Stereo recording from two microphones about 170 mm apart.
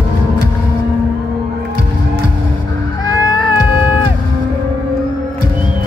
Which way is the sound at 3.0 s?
25° left (ahead or behind).